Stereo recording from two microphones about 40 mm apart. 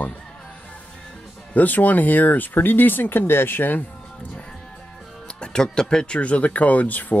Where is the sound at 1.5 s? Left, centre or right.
Left.